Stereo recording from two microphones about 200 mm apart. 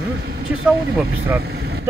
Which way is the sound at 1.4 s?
50° right (ahead or behind).